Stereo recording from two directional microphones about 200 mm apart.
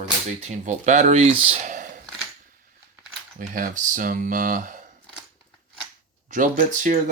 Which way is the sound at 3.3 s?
40° right (ahead or behind).